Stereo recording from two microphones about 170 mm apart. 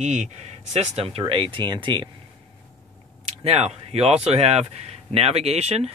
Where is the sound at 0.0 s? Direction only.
40° right (ahead or behind); by 2.0 s 25° right (ahead or behind).